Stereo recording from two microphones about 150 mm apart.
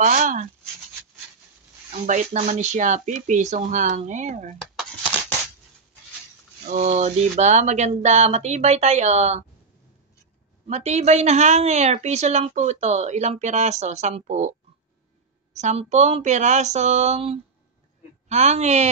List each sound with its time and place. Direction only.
0.0 s speech: 55° right (ahead or behind)
1.9 s a woman's voice: 55° right (ahead or behind)
6.7 s a woman's voice: 55° right (ahead or behind)
10.7 s a woman's voice: 45° right (ahead or behind)
15.5 s a woman's voice: 50° right (ahead or behind)